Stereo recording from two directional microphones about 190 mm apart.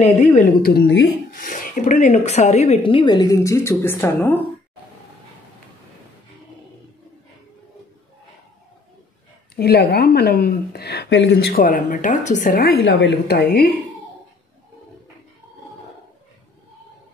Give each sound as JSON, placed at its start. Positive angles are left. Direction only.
{"t": 0.0, "sound": "a woman's voice", "side_deg": 40}
{"t": 1.3, "sound": "speech", "side_deg": 45}
{"t": 9.6, "sound": "a woman's voice", "side_deg": 55}
{"t": 12.8, "sound": "a woman's voice", "side_deg": 60}